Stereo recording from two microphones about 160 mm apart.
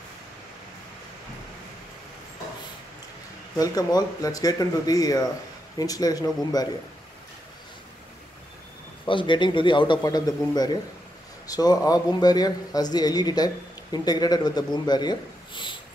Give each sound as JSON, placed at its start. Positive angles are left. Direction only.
{"t": 3.5, "sound": "a man's voice", "side_deg": 25}
{"t": 9.0, "sound": "a man's voice", "side_deg": 30}